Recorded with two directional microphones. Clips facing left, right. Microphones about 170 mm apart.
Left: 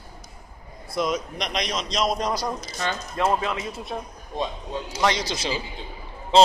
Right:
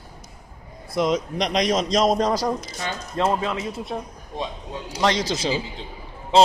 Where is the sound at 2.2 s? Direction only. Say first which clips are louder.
Right 5 dB; 90° right.